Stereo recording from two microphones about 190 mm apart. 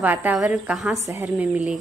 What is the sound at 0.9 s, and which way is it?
Speech, 15° right (ahead or behind).